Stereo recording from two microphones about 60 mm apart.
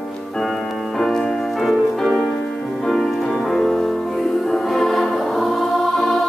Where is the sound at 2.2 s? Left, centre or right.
Left.